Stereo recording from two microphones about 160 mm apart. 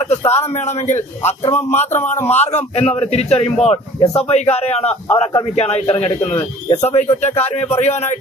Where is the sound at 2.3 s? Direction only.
45° left (ahead or behind).